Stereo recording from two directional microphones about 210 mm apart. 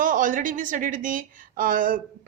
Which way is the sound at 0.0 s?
40° right (ahead or behind).